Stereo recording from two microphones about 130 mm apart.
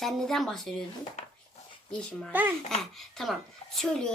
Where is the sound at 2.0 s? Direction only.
5° left (ahead or behind).